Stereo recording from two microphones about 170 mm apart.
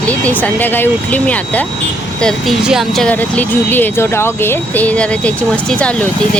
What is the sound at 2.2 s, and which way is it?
Speech, centre (ahead or behind).